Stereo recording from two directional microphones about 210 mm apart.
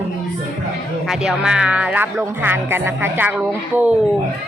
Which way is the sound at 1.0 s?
Centre (ahead or behind).